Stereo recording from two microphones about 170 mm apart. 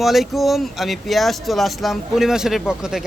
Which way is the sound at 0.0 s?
Centre (ahead or behind).